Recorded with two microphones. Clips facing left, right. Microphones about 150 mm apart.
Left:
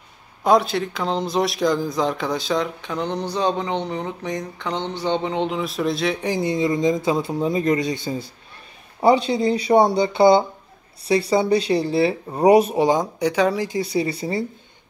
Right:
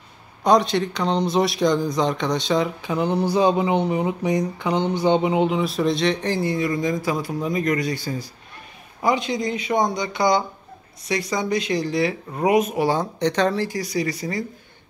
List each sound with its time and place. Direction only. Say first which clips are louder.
0.4 s speech: even; 5° left (ahead or behind)
6.3 s speech: left 2 dB; 20° left (ahead or behind)
9.0 s speech: left 5 dB; 30° left (ahead or behind)
12.8 s speech: left 2 dB; 15° left (ahead or behind)